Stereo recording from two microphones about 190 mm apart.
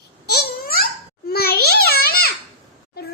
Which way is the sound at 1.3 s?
55° left (ahead or behind).